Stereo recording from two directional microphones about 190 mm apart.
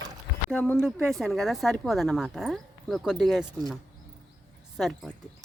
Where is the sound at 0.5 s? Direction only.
5° left (ahead or behind).